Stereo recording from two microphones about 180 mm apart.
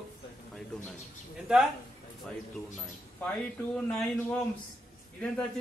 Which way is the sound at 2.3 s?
5° left (ahead or behind).